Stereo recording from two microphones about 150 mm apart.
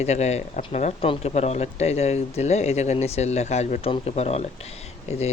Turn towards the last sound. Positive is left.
turn(degrees=45)  # may be behind; listen again after turning